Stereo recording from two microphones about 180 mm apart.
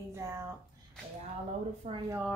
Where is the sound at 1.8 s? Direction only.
40° right (ahead or behind).